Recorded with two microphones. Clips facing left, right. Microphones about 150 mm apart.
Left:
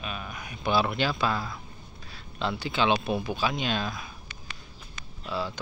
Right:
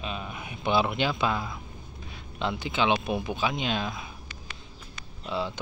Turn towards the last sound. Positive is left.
turn(degrees=-20)  # may be behind; listen again after turning